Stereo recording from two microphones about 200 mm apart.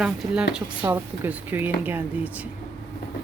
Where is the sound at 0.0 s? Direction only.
5° right (ahead or behind).